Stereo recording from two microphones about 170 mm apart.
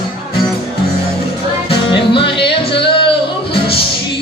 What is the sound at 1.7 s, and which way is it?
Music, 30° left (ahead or behind).